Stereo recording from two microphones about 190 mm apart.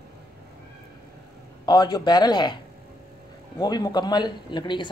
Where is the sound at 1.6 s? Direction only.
20° left (ahead or behind).